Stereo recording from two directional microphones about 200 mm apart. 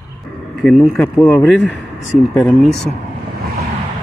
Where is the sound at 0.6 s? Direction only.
Centre (ahead or behind).